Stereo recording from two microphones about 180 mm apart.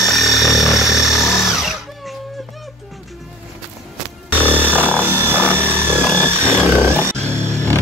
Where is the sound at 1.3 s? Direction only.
Centre (ahead or behind).